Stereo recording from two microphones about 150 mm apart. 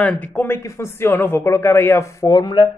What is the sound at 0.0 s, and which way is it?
Speech, 15° left (ahead or behind).